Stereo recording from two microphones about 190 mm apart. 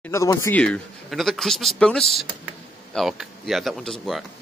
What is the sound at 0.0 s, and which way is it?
Speech, 15° left (ahead or behind).